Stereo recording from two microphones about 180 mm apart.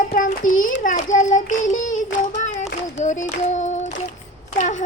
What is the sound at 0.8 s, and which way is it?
Child singing, 45° left (ahead or behind).